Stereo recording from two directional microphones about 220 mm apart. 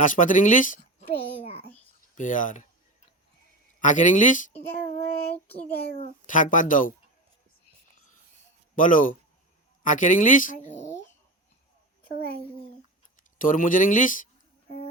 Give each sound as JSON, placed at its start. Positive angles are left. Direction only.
{"t": 0.0, "sound": "speech", "side_deg": 35}
{"t": 2.1, "sound": "a child's voice", "side_deg": 35}
{"t": 3.8, "sound": "a child's voice", "side_deg": 35}
{"t": 4.9, "sound": "child singing", "side_deg": 10}
{"t": 5.8, "sound": "a child's voice", "side_deg": 35}
{"t": 8.7, "sound": "speech", "side_deg": 35}
{"t": 13.4, "sound": "a child's voice", "side_deg": 35}